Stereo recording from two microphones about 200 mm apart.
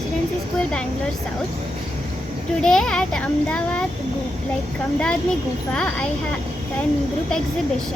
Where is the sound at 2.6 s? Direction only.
Centre (ahead or behind).